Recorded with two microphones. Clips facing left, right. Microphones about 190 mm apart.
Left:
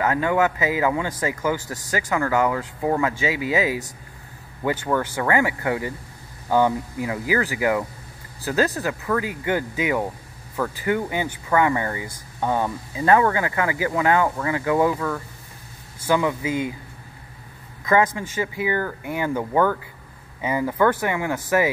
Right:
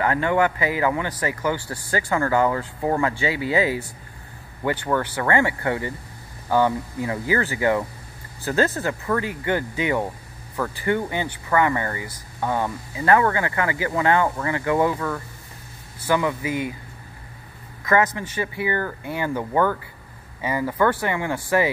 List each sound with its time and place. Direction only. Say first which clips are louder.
0.0 s speech: even; 15° left (ahead or behind)
2.1 s speech: right 1 dB; 5° left (ahead or behind)
15.0 s speech: left 1 dB; centre (ahead or behind)
16.1 s speech: left 1 dB; 15° left (ahead or behind)
17.8 s speech: left 1 dB; 15° left (ahead or behind)